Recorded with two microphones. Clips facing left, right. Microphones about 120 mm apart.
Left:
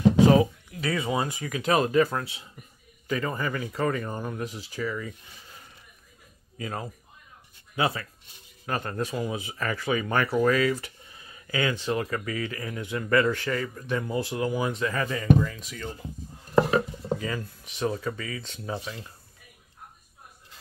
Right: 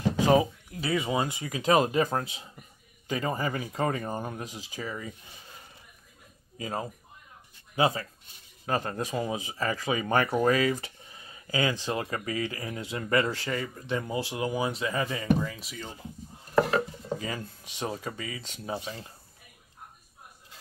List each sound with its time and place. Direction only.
0.3 s speech: 25° right (ahead or behind)
4.4 s speech: 15° right (ahead or behind)
6.6 s speech: 25° right (ahead or behind)
17.2 s speech: 25° right (ahead or behind)